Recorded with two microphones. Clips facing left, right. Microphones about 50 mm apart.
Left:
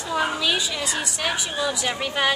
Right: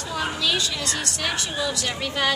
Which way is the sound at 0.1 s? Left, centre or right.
Centre.